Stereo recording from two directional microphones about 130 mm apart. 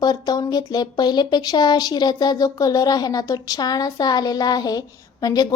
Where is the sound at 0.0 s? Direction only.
30° left (ahead or behind).